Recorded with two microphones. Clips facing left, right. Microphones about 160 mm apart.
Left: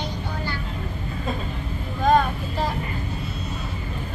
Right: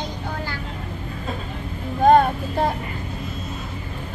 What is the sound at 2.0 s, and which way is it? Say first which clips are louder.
Vehicle: right 5 dB; 55° right (ahead or behind).